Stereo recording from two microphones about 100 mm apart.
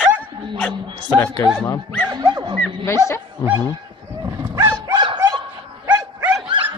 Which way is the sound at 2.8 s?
25° left (ahead or behind).